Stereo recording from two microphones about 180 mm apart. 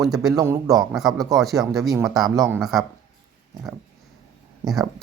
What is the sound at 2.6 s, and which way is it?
Speech, centre (ahead or behind).